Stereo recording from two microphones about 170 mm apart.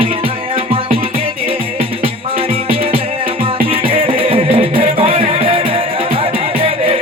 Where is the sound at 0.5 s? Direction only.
35° right (ahead or behind).